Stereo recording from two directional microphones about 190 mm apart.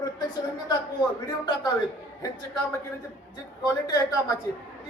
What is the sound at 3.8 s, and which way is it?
Speech, 15° left (ahead or behind).